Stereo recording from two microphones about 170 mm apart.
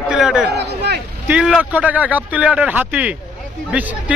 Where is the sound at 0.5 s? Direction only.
75° right (ahead or behind).